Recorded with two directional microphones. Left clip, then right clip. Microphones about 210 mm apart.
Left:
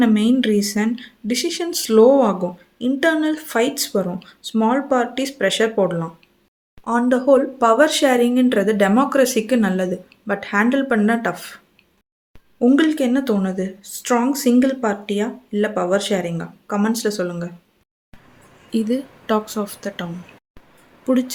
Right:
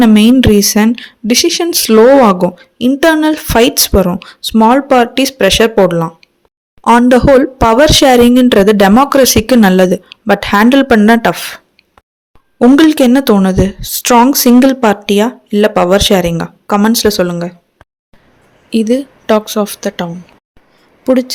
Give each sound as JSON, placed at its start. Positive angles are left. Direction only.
{"t": 0.0, "sound": "speech", "side_deg": -40}
{"t": 18.7, "sound": "a woman's voice", "side_deg": -35}